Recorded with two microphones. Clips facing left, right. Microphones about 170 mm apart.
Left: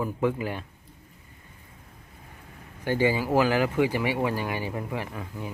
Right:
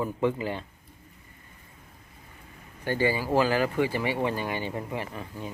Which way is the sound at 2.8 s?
15° left (ahead or behind).